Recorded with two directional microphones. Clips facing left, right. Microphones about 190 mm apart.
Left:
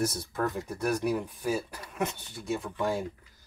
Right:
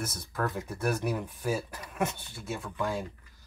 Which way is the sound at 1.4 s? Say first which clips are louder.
Left 1 dB; 15° left (ahead or behind).